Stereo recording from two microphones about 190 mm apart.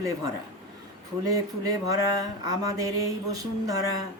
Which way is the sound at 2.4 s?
20° right (ahead or behind).